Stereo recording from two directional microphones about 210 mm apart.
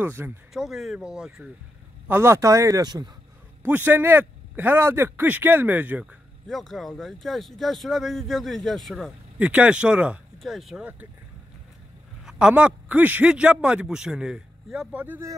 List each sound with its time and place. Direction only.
0.0 s a man's voice: 10° right (ahead or behind)
3.6 s a man's voice: 10° right (ahead or behind)
12.3 s speech: 5° right (ahead or behind)